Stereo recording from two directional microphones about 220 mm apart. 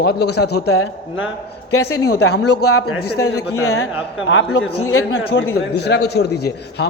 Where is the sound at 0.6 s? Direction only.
80° left.